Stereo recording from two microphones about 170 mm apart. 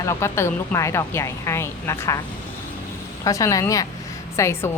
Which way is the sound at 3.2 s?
20° left (ahead or behind).